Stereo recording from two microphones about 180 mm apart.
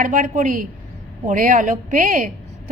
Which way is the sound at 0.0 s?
45° right (ahead or behind).